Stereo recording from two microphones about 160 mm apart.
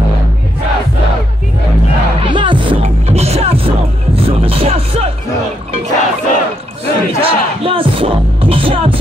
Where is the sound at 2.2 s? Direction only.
30° right (ahead or behind).